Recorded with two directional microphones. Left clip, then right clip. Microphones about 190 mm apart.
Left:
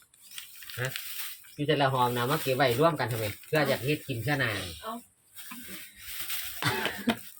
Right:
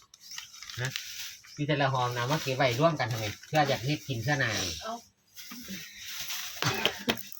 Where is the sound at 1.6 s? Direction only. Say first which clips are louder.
Left 3 dB; 50° left (ahead or behind).